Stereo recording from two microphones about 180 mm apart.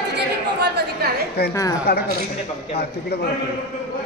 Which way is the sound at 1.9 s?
60° left (ahead or behind).